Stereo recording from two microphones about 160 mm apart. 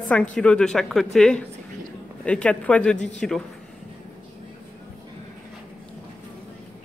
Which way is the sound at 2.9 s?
45° left (ahead or behind).